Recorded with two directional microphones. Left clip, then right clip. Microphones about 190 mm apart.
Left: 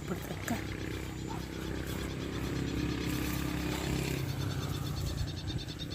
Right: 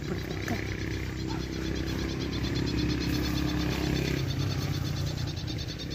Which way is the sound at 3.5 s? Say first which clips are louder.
Right 5 dB; 40° left (ahead or behind).